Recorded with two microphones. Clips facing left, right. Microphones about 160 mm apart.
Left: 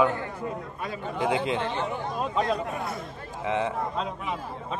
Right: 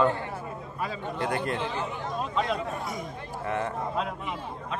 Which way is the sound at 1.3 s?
90° left.